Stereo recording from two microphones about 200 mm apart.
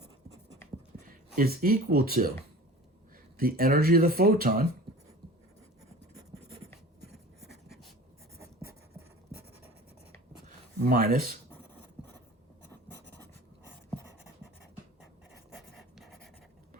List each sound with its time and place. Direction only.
1.4 s speech: 50° right (ahead or behind)
3.3 s speech: 45° right (ahead or behind)
7.1 s writing: 55° right (ahead or behind)
10.8 s speech: 45° right (ahead or behind)